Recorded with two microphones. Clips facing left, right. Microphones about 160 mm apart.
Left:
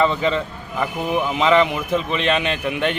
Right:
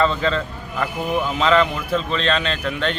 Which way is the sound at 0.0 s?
15° left (ahead or behind).